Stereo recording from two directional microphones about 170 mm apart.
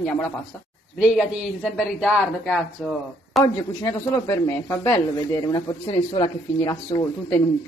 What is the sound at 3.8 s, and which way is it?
Speech, 20° left (ahead or behind).